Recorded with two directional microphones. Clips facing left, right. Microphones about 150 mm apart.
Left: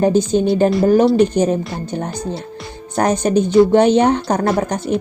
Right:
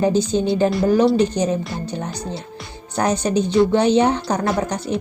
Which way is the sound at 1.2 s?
55° left (ahead or behind).